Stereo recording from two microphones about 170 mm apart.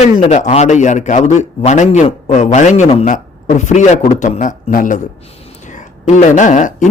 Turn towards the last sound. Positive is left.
turn(degrees=45)  # may be behind; listen again after turning